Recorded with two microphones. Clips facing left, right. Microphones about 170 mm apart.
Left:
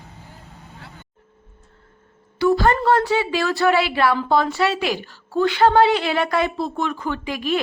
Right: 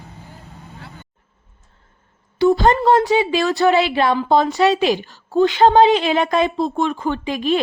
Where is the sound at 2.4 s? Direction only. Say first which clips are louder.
Right 3 dB; 20° right (ahead or behind).